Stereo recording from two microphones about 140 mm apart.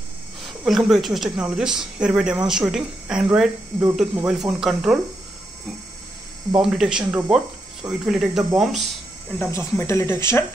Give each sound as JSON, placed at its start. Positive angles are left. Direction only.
{"t": 0.4, "sound": "speech", "side_deg": 0}
{"t": 6.5, "sound": "speech", "side_deg": -5}
{"t": 9.4, "sound": "speech", "side_deg": 20}